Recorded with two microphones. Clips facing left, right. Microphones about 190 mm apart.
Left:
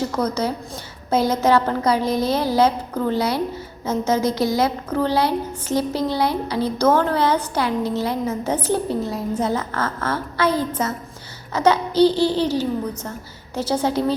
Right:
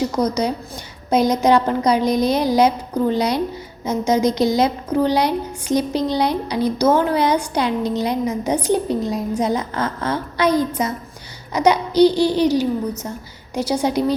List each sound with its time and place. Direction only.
0.0 s a woman's voice: 15° right (ahead or behind)